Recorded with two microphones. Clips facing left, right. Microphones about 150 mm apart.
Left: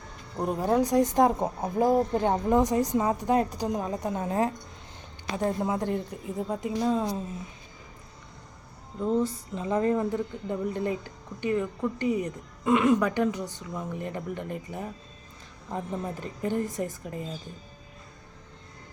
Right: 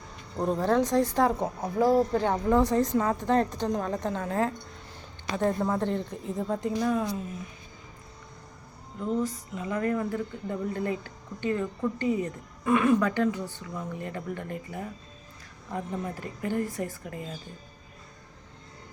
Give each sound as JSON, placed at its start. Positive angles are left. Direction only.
{"t": 0.3, "sound": "a woman's voice", "side_deg": 10}
{"t": 9.0, "sound": "speech", "side_deg": 25}
{"t": 16.4, "sound": "speech", "side_deg": 20}